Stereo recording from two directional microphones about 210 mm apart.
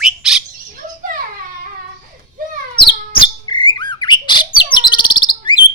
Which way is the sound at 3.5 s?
25° left (ahead or behind).